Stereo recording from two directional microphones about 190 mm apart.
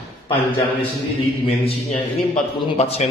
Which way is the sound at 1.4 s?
30° left (ahead or behind).